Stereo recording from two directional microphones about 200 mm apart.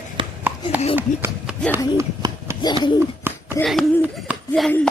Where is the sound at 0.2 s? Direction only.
25° right (ahead or behind).